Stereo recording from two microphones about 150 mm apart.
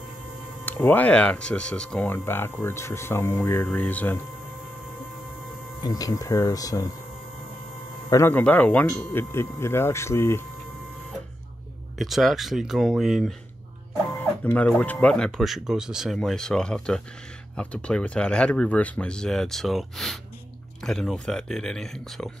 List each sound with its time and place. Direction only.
0.7 s speech: 10° left (ahead or behind)
5.8 s speech: 25° left (ahead or behind)
8.1 s speech: 15° left (ahead or behind)
12.0 s speech: centre (ahead or behind)
14.4 s speech: 10° left (ahead or behind)